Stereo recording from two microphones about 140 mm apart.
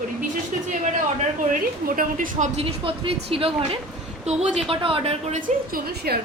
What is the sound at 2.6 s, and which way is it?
A woman's voice, 40° right (ahead or behind).